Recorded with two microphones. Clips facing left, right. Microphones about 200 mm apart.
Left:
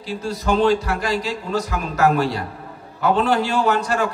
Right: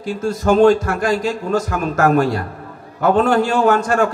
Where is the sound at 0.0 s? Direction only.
50° right (ahead or behind).